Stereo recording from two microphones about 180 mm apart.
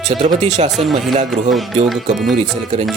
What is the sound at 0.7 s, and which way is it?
Speech, centre (ahead or behind).